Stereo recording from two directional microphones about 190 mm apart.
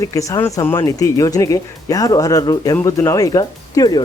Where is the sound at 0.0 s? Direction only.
15° left (ahead or behind).